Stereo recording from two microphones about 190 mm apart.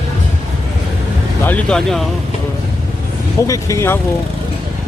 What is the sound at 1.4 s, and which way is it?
Speech, 5° left (ahead or behind).